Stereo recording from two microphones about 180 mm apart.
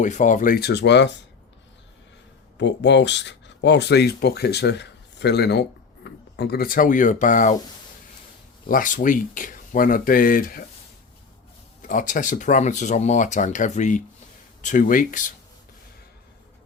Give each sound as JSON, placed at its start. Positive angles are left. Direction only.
{"t": 0.0, "sound": "speech", "side_deg": 40}
{"t": 2.6, "sound": "speech", "side_deg": 75}
{"t": 8.6, "sound": "speech", "side_deg": 50}
{"t": 11.9, "sound": "speech", "side_deg": 45}